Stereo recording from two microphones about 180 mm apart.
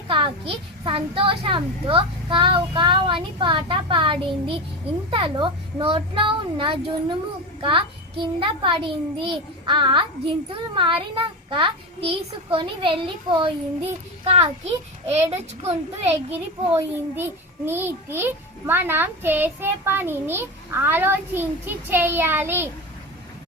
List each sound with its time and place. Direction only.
0.1 s a child's voice: 30° right (ahead or behind)
16.7 s a child's voice: 15° right (ahead or behind)